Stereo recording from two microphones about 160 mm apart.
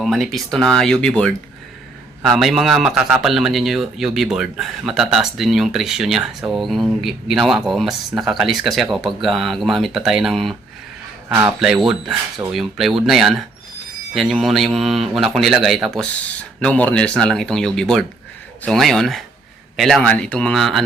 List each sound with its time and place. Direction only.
0.0 s a man's voice: centre (ahead or behind)
11.6 s a man's voice: 5° right (ahead or behind)